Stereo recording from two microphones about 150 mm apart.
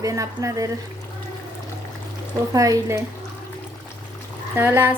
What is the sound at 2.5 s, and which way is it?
Speech, 20° right (ahead or behind).